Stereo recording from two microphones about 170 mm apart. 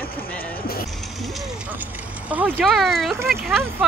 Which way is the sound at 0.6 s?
60° left (ahead or behind).